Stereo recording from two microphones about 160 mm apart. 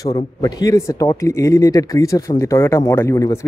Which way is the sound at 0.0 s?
25° left (ahead or behind).